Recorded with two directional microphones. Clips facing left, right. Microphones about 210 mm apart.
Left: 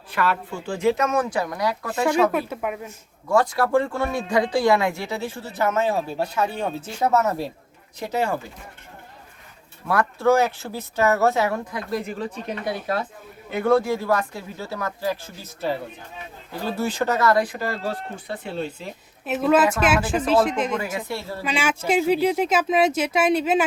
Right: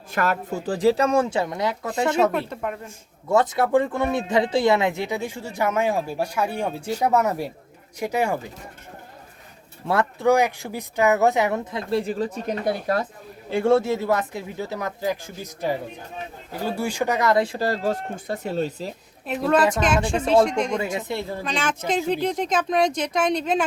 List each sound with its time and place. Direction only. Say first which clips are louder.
0.1 s speech: right 1 dB; 45° right (ahead or behind); by 2.3 s 25° right (ahead or behind)
2.5 s a woman's voice: left 1 dB; 5° left (ahead or behind)
3.2 s speech: even; 20° right (ahead or behind)
9.8 s speech: even; 25° right (ahead or behind); by 13.1 s 40° right (ahead or behind)
13.5 s speech: right 1 dB; 25° right (ahead or behind)
19.2 s a woman's voice: left 1 dB; 5° left (ahead or behind)
20.7 s speech: right 2 dB; 25° right (ahead or behind)
21.4 s speech: left 6 dB; 10° left (ahead or behind)